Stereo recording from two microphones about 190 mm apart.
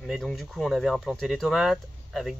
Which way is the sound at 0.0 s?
Centre (ahead or behind).